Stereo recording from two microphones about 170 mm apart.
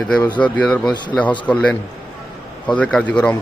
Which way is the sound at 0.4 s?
10° left (ahead or behind).